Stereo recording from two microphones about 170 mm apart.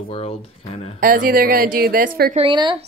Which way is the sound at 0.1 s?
35° left (ahead or behind).